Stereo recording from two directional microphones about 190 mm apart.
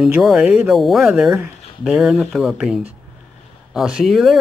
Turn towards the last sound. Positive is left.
turn(degrees=0)  # may be behind; listen again after turning